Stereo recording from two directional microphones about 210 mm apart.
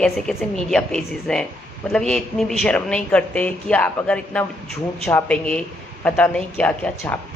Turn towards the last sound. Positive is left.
turn(degrees=10)  # may be behind; listen again after turning